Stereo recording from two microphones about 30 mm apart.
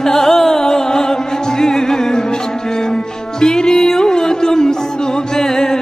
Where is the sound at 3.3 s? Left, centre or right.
Left.